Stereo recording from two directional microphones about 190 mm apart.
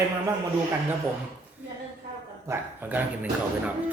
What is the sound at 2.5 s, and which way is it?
Speech, 10° right (ahead or behind).